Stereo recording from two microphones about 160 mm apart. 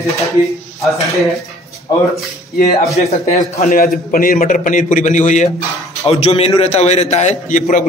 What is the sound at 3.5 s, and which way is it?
A man's voice, 65° left (ahead or behind).